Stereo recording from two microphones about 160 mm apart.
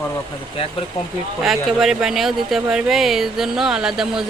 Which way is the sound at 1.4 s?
Centre (ahead or behind).